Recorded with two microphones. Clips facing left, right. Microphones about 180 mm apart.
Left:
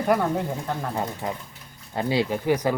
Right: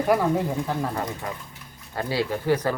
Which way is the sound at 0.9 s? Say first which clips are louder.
Left 1 dB; 25° left (ahead or behind).